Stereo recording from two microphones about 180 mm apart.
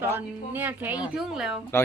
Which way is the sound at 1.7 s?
15° left (ahead or behind).